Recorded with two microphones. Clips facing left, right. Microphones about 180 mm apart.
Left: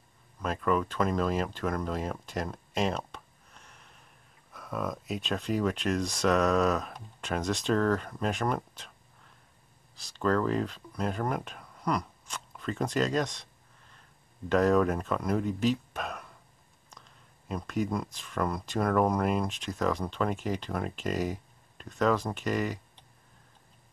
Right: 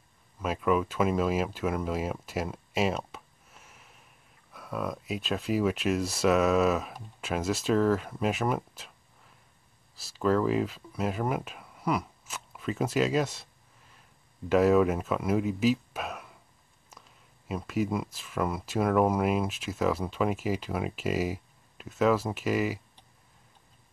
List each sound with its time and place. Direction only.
0.4 s speech: 5° right (ahead or behind)
9.9 s speech: 5° right (ahead or behind)